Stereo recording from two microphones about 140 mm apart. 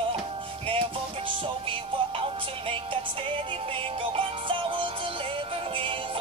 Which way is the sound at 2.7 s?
40° right (ahead or behind).